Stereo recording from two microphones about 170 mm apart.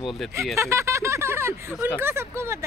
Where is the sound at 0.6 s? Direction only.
15° right (ahead or behind).